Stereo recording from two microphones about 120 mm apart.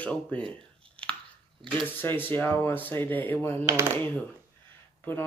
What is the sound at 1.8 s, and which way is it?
Speech, 15° left (ahead or behind).